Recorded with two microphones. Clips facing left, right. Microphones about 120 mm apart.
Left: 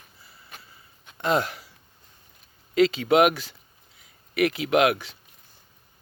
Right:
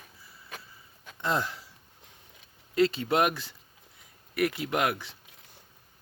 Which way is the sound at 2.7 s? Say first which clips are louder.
Left 6 dB; 90° left.